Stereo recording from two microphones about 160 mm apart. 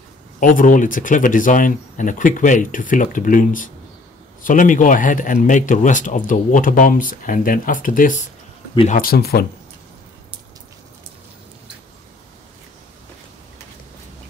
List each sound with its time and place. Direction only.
0.4 s speech: 55° left (ahead or behind); by 9.5 s 75° left (ahead or behind)